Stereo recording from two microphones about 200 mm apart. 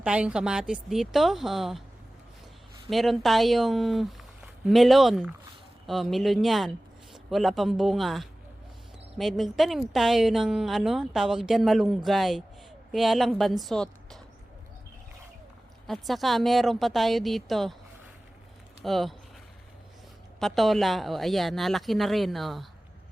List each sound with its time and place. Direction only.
0.0 s speech: 5° right (ahead or behind)
2.9 s speech: centre (ahead or behind)
15.9 s speech: centre (ahead or behind)
18.8 s speech: centre (ahead or behind)
20.4 s speech: centre (ahead or behind)